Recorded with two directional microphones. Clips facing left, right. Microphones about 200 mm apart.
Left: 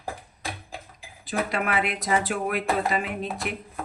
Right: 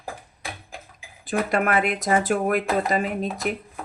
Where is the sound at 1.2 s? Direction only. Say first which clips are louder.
Right 4 dB; 50° right (ahead or behind).